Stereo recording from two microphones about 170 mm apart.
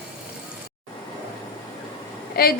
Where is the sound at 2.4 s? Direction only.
60° left (ahead or behind).